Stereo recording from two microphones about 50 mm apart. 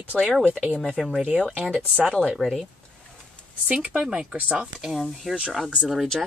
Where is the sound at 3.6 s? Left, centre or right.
Right.